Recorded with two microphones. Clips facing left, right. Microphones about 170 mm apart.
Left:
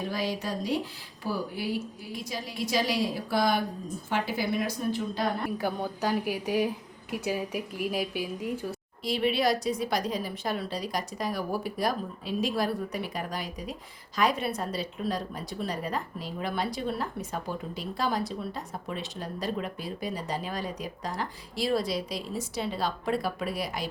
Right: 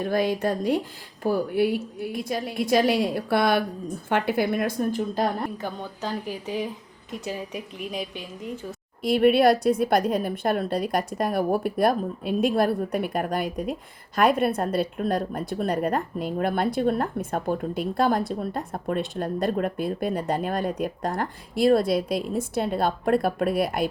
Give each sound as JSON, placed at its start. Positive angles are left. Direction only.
{"t": 0.0, "sound": "a woman's voice", "side_deg": -55}
{"t": 5.5, "sound": "a woman's voice", "side_deg": 10}
{"t": 9.0, "sound": "a woman's voice", "side_deg": -55}